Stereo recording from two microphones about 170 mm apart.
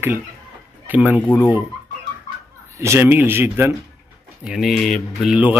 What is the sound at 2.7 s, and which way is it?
Speech, 15° right (ahead or behind).